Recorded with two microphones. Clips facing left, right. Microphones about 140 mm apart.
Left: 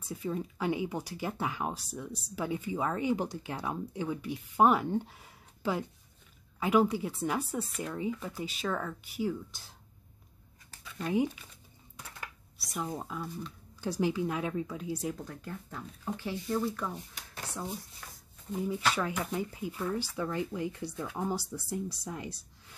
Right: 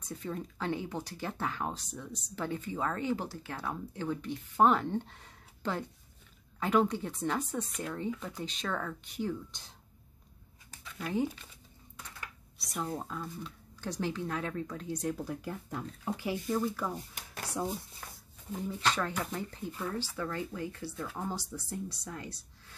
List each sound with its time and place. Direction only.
0.0 s speech: 10° left (ahead or behind)
10.8 s a sound: 5° left (ahead or behind)
12.5 s speech: centre (ahead or behind)
15.2 s speech: 10° right (ahead or behind)
18.0 s a sound: 40° right (ahead or behind)
18.5 s speech: 10° left (ahead or behind)